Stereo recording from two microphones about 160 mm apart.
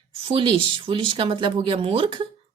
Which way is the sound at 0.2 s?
35° right (ahead or behind).